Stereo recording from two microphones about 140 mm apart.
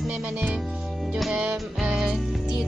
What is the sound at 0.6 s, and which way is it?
Music, centre (ahead or behind).